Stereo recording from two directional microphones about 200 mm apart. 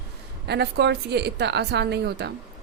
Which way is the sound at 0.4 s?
55° right (ahead or behind).